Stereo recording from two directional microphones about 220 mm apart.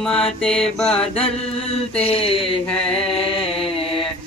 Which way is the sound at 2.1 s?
25° left (ahead or behind).